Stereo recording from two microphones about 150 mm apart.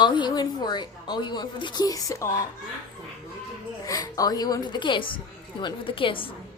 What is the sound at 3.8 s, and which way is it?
A woman's voice, 25° left (ahead or behind).